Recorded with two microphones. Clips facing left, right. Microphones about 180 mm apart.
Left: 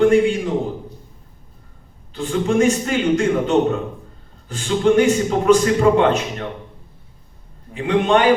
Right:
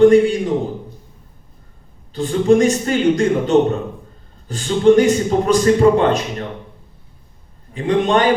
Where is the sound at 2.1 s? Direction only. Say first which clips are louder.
Right 5 dB; 35° right (ahead or behind).